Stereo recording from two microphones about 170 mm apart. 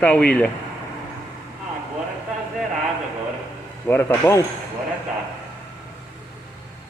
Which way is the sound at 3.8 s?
15° left (ahead or behind).